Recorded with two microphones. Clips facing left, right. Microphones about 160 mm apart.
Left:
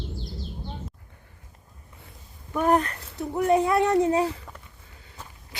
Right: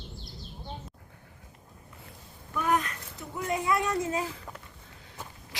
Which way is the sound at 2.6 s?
35° left (ahead or behind).